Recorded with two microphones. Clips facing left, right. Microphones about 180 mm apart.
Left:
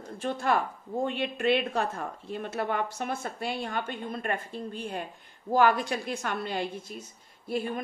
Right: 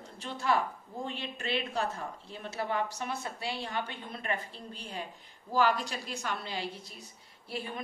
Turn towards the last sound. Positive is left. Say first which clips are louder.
# left 8 dB
turn(degrees=50)  # may be behind; listen again after turning